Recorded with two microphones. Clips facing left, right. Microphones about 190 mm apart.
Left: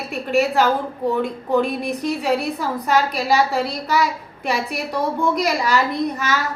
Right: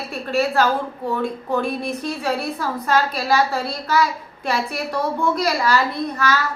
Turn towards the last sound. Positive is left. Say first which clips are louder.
# even
turn(degrees=20)  # may be behind; listen again after turning